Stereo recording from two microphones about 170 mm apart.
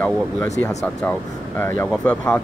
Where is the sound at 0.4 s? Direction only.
10° left (ahead or behind).